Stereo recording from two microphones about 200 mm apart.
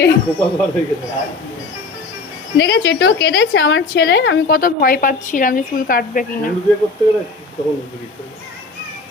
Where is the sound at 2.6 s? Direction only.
55° left (ahead or behind).